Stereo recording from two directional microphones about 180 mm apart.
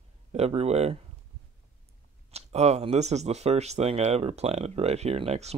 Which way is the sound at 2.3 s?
35° right (ahead or behind).